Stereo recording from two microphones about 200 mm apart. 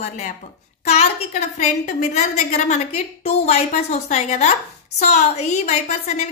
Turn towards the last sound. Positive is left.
turn(degrees=35)  # may be behind; listen again after turning